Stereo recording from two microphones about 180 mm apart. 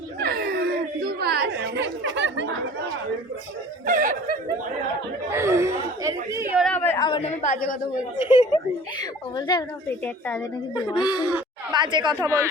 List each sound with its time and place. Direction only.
0.2 s chatter: 60° right (ahead or behind); by 2.5 s 85° right
3.8 s speech: 50° right (ahead or behind)
5.3 s speech: 15° right (ahead or behind)
6.6 s a woman's voice: 10° left (ahead or behind)
7.0 s a woman's voice: 30° left (ahead or behind)
8.4 s speech: 25° left (ahead or behind)
10.0 s a woman's voice: 10° left (ahead or behind)
10.8 s speech: 25° left (ahead or behind)
11.7 s speech: 25° right (ahead or behind)